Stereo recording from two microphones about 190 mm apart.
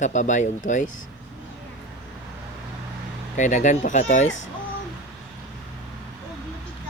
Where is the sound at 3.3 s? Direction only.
40° left (ahead or behind).